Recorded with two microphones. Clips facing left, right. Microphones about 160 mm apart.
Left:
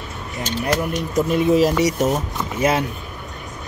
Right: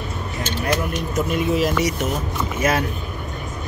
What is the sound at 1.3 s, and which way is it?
Speech, 35° left (ahead or behind).